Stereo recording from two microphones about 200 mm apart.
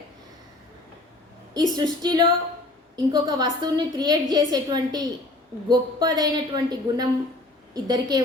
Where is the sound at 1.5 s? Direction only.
20° right (ahead or behind).